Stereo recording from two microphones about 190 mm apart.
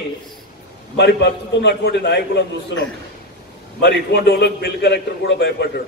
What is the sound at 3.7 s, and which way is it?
A man's voice, 55° left (ahead or behind).